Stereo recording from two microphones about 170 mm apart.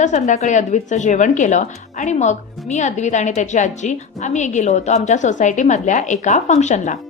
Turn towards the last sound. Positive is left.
turn(degrees=45)  # may be behind; listen again after turning